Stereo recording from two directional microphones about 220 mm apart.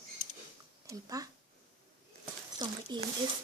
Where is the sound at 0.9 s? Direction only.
15° right (ahead or behind).